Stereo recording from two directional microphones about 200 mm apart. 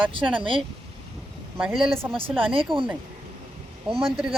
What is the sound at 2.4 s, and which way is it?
Speech, 25° right (ahead or behind).